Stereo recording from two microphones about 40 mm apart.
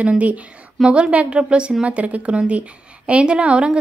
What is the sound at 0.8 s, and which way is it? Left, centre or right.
A woman's voice, right.